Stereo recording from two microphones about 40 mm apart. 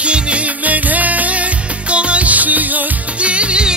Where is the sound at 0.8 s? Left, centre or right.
Right.